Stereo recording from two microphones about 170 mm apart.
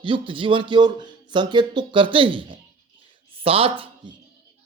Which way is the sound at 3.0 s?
30° right (ahead or behind).